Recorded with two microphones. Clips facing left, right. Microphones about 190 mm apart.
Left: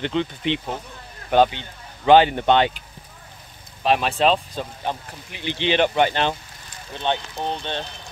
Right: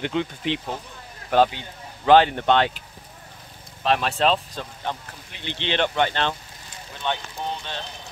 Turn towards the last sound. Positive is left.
turn(degrees=25)  # may be behind; listen again after turning